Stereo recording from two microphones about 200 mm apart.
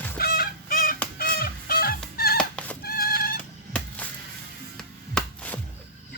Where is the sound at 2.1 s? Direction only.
50° left (ahead or behind).